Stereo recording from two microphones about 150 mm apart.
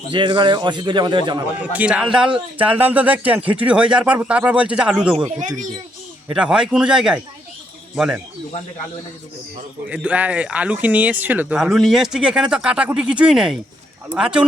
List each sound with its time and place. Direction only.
0.1 s a man's voice: 30° right (ahead or behind)
1.7 s speech: 10° right (ahead or behind)
6.3 s a man's voice: 5° right (ahead or behind)
9.9 s a man's voice: 10° right (ahead or behind)